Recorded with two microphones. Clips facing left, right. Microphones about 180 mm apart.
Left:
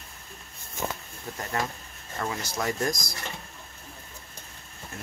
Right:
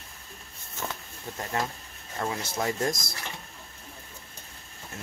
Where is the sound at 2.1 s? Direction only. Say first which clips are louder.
Right 1 dB; 25° right (ahead or behind).